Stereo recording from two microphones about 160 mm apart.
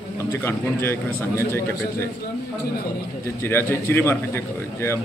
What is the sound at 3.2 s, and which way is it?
A man's voice, 15° left (ahead or behind).